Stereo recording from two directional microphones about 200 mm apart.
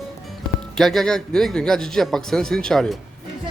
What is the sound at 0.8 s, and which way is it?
Speech, centre (ahead or behind).